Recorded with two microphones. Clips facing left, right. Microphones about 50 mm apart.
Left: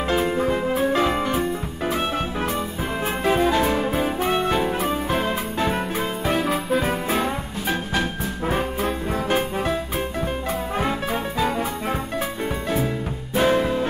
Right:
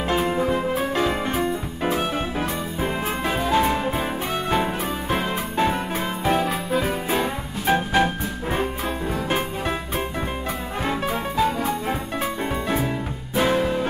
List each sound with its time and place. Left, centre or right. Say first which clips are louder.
0.1 s music: even; centre
3.5 s music: even; centre
5.1 s music: even; centre
6.4 s music: left 1 dB; centre
7.7 s music: right 6 dB; centre
8.5 s music: left 2 dB; centre
10.9 s music: even; centre
13.4 s music: left 1 dB; centre